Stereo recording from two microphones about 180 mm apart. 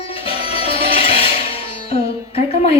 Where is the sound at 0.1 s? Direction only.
30° left (ahead or behind).